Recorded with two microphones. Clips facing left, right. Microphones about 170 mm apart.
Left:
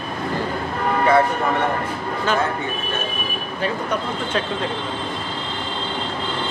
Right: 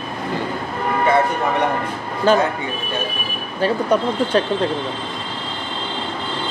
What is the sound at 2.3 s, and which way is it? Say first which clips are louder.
Speech: right 7 dB; 35° right (ahead or behind).